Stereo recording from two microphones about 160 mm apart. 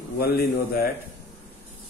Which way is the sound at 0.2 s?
75° left (ahead or behind).